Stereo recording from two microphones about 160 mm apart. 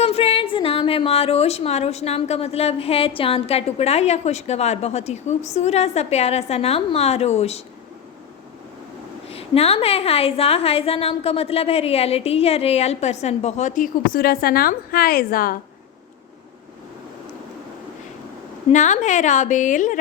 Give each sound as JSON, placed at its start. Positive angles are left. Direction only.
{"t": 0.0, "sound": "a woman's voice", "side_deg": 40}
{"t": 9.3, "sound": "a woman's voice", "side_deg": 40}
{"t": 18.7, "sound": "a woman's voice", "side_deg": 50}